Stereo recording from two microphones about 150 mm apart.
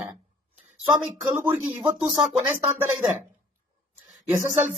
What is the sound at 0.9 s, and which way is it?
Speech, 25° right (ahead or behind).